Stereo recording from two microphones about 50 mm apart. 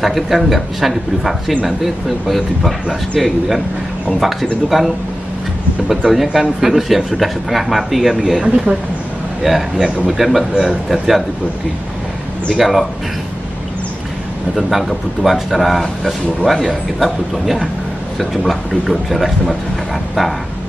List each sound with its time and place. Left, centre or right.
0.0 s speech: centre
12.4 s speech: centre
14.5 s speech: centre